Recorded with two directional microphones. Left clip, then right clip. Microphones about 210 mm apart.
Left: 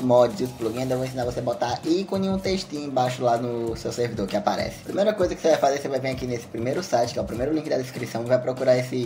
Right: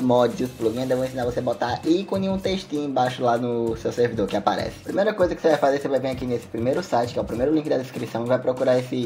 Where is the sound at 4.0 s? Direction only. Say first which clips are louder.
Right 4 dB; 20° right (ahead or behind).